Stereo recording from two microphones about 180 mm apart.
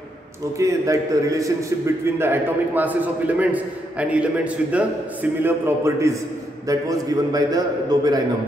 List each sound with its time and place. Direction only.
0.6 s a man's voice: 20° right (ahead or behind)